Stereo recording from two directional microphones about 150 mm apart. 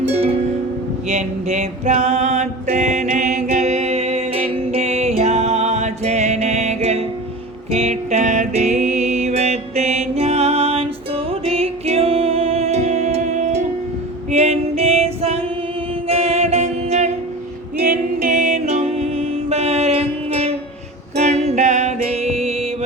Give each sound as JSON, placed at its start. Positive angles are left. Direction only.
{"t": 0.0, "sound": "music", "side_deg": -45}
{"t": 1.0, "sound": "a sound", "side_deg": -50}
{"t": 7.7, "sound": "music", "side_deg": -45}
{"t": 14.3, "sound": "female singing", "side_deg": -45}
{"t": 16.0, "sound": "music", "side_deg": -45}
{"t": 17.7, "sound": "music", "side_deg": -75}